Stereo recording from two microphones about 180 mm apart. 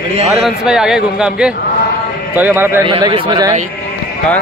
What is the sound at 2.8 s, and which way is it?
Speech, 30° right (ahead or behind).